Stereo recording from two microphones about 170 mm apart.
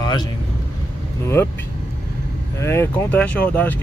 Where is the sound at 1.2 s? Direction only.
15° left (ahead or behind).